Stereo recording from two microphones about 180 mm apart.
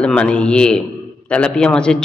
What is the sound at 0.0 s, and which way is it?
A man's voice, 5° left (ahead or behind).